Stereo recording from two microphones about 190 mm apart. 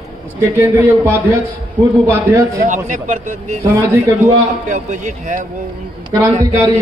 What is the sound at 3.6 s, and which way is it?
Speech, 15° right (ahead or behind).